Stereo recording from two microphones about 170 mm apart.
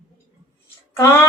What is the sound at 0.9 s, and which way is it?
Speech, 15° left (ahead or behind).